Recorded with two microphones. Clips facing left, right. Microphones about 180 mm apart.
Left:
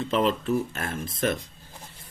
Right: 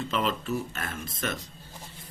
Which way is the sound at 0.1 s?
50° left (ahead or behind).